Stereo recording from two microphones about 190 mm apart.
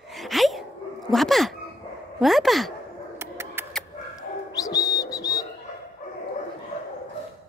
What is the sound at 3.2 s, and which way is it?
Bird, 15° right (ahead or behind).